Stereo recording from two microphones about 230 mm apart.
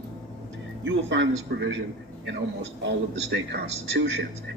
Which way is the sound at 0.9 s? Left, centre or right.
Right.